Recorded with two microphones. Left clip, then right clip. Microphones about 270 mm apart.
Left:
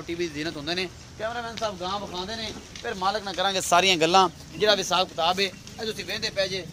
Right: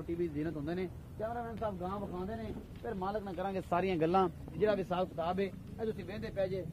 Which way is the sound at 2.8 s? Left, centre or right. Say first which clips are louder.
Left 11 dB; left.